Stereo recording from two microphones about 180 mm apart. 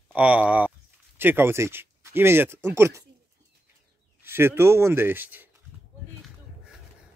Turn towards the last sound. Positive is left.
turn(degrees=-10)  # may be behind; listen again after turning